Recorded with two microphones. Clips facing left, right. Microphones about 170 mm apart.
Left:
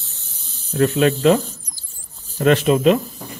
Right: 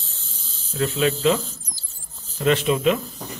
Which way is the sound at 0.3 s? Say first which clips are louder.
Left 7 dB; 65° left (ahead or behind).